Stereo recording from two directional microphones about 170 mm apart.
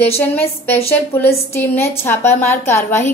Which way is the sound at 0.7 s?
15° left (ahead or behind).